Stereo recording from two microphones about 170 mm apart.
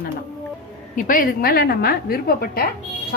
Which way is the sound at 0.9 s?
50° left (ahead or behind).